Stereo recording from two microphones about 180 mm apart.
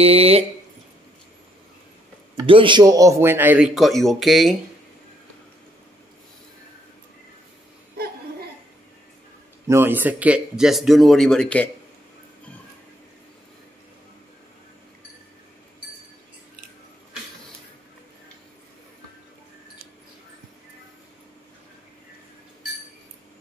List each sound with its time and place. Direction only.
0.0 s speech: 35° right (ahead or behind)
2.4 s speech: 30° right (ahead or behind); by 4.6 s centre (ahead or behind)
9.7 s speech: 10° right (ahead or behind); by 11.7 s 5° left (ahead or behind)